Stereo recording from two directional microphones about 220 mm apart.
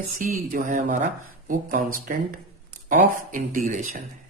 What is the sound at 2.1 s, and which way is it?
Speech, 40° right (ahead or behind).